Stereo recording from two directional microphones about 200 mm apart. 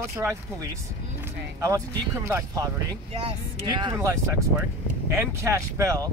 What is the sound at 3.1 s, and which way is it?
Speech, 25° right (ahead or behind).